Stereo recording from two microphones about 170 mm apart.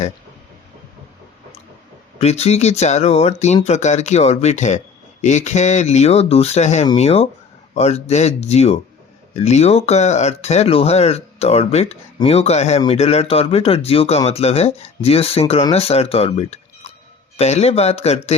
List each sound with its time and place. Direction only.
2.1 s speech: 35° left (ahead or behind)